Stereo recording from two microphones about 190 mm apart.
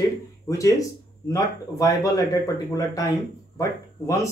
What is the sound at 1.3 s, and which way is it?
Speech, 20° left (ahead or behind).